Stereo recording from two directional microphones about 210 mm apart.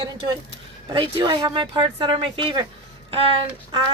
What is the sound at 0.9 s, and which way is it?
Speech, 20° right (ahead or behind).